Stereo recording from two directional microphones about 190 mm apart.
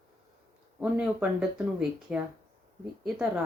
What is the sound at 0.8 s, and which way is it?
Speech, 5° right (ahead or behind).